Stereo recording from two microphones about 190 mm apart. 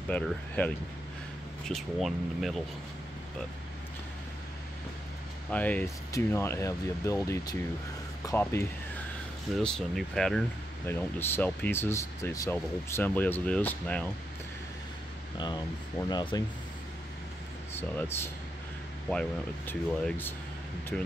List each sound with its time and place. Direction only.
0.1 s speech: 10° left (ahead or behind)
5.5 s speech: 10° left (ahead or behind)
9.6 s speech: 5° left (ahead or behind)
15.3 s speech: 20° left (ahead or behind)
17.7 s speech: 10° left (ahead or behind)